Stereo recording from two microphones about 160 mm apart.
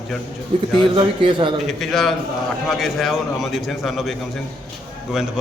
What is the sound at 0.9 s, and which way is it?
Speech, 30° right (ahead or behind).